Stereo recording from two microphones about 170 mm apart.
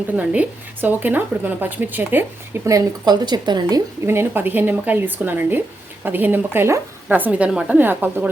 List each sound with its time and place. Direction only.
0.2 s a woman's voice: 10° right (ahead or behind)